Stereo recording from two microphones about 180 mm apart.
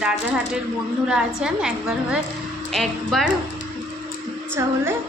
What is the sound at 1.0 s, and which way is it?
Speech, 5° right (ahead or behind).